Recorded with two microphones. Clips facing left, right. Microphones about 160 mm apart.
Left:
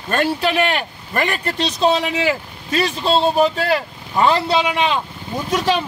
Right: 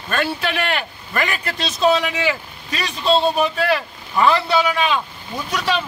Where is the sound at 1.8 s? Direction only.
30° left (ahead or behind).